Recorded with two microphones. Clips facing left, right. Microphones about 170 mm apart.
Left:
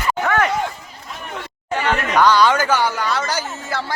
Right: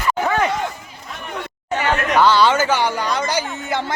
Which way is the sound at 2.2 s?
10° right (ahead or behind).